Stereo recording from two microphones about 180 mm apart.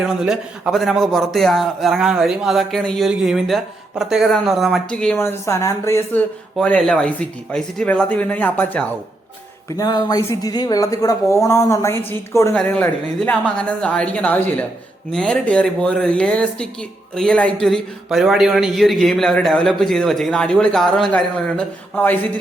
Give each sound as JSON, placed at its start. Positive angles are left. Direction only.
{"t": 0.2, "sound": "speech", "side_deg": -5}
{"t": 9.6, "sound": "a woman's voice", "side_deg": 20}